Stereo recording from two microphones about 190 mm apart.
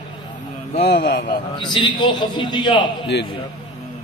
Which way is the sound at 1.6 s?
25° left (ahead or behind).